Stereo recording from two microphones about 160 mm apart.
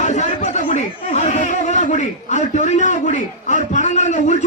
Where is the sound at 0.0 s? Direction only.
45° left (ahead or behind).